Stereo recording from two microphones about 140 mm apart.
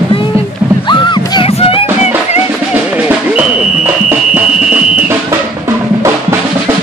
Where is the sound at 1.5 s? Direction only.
45° left (ahead or behind).